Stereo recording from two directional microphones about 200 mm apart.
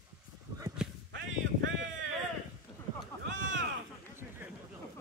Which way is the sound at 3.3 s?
70° right (ahead or behind).